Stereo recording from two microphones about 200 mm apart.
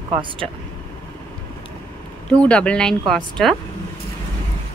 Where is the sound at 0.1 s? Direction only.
25° right (ahead or behind).